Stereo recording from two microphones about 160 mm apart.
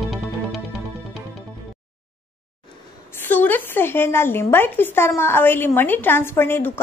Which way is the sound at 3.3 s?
10° left (ahead or behind).